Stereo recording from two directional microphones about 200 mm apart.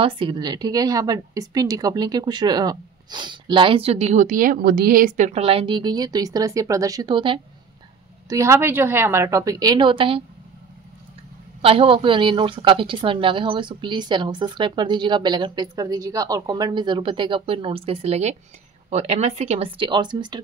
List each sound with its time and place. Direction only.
0.0 s a woman's voice: 25° right (ahead or behind)
11.6 s a woman's voice: 25° right (ahead or behind)